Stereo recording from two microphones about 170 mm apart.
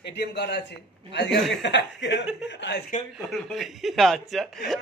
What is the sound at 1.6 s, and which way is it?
A man's voice, 90° left.